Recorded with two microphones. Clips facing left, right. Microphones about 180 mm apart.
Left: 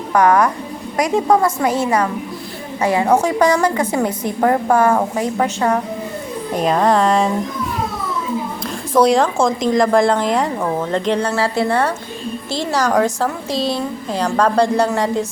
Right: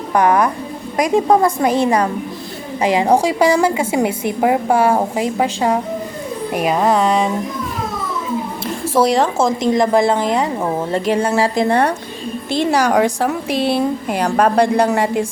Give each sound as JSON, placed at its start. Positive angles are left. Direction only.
{"t": 0.1, "sound": "a woman's voice", "side_deg": -25}
{"t": 1.0, "sound": "a woman's voice", "side_deg": -15}
{"t": 1.4, "sound": "a woman's voice", "side_deg": -35}
{"t": 1.6, "sound": "a woman's voice", "side_deg": -15}
{"t": 9.0, "sound": "a woman's voice", "side_deg": 0}
{"t": 10.6, "sound": "a woman's voice", "side_deg": -25}
{"t": 10.9, "sound": "a woman's voice", "side_deg": -10}
{"t": 13.6, "sound": "speech", "side_deg": -60}
{"t": 14.5, "sound": "a woman's voice", "side_deg": -15}